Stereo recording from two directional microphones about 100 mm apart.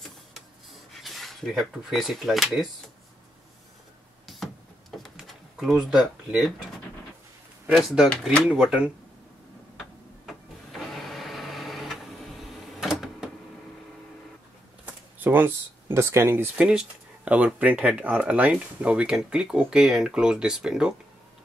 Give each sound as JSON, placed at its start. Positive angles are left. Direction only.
{"t": 0.0, "sound": "a sound", "side_deg": 0}
{"t": 4.9, "sound": "drawer open or close", "side_deg": 0}
{"t": 7.7, "sound": "speech", "side_deg": -5}
{"t": 9.8, "sound": "printer", "side_deg": 0}
{"t": 12.8, "sound": "a sound", "side_deg": -5}
{"t": 15.1, "sound": "speech", "side_deg": -20}
{"t": 16.5, "sound": "speech", "side_deg": -10}